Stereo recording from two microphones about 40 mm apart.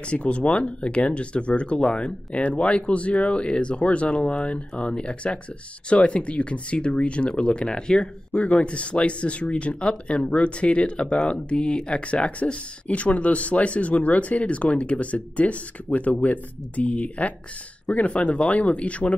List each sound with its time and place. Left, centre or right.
0.1 s speech: left
8.4 s speech: left